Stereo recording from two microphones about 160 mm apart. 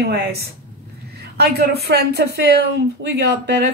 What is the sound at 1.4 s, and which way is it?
Speech, 85° right.